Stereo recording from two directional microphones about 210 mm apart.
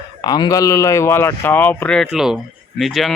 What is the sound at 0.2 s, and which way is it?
Speech, 20° left (ahead or behind).